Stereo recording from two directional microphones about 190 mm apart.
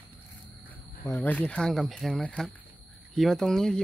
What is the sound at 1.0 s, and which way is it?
Speech, 10° left (ahead or behind).